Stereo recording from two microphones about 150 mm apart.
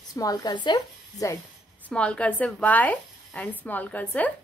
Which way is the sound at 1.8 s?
10° left (ahead or behind).